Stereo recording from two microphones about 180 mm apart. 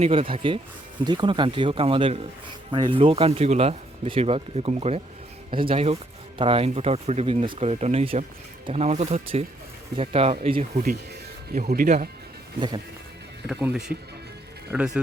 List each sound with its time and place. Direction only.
0.0 s speech: 30° right (ahead or behind)
11.6 s speech: 60° right (ahead or behind)
12.5 s speech: 25° right (ahead or behind)
13.5 s speech: 5° right (ahead or behind)